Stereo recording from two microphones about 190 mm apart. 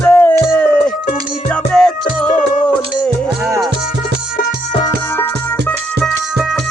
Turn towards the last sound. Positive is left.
turn(degrees=0)  # may be behind; listen again after turning